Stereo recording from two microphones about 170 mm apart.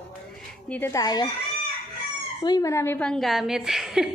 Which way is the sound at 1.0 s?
25° left (ahead or behind).